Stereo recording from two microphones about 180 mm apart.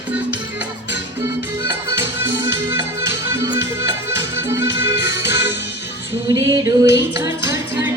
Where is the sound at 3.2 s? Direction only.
20° right (ahead or behind).